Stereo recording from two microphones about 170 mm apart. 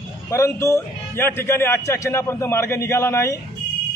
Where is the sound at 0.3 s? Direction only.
15° left (ahead or behind).